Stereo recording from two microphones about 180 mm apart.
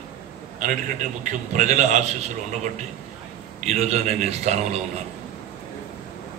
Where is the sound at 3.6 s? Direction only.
40° right (ahead or behind).